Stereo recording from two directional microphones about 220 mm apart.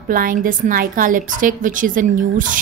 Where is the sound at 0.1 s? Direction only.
40° right (ahead or behind).